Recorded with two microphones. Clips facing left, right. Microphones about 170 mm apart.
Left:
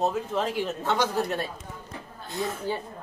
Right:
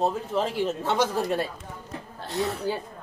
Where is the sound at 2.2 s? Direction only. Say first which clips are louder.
Right 3 dB; 70° right (ahead or behind).